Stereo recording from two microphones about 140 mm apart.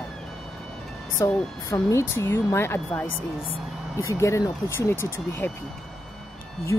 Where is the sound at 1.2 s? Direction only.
25° left (ahead or behind).